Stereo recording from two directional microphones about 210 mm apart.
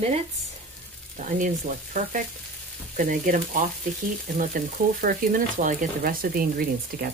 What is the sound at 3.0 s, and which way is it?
Speech, 40° right (ahead or behind).